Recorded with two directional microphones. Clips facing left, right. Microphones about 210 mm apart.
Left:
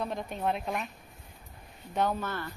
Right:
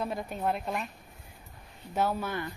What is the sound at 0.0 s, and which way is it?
Speech, 5° right (ahead or behind).